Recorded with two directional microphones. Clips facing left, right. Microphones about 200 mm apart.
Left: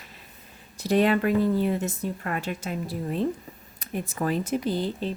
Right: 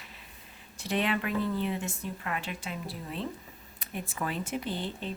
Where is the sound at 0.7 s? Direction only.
40° left (ahead or behind).